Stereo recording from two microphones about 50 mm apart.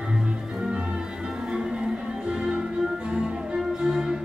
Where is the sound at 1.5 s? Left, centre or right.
Centre.